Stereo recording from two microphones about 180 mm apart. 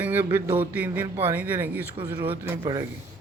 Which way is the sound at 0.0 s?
10° right (ahead or behind).